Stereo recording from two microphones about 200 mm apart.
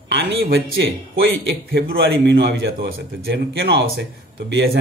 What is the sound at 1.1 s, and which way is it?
A man's voice, 55° right (ahead or behind).